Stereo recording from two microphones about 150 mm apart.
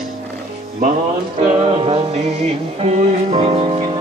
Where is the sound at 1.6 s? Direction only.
40° right (ahead or behind).